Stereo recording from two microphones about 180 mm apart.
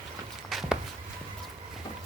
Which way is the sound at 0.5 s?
Centre (ahead or behind).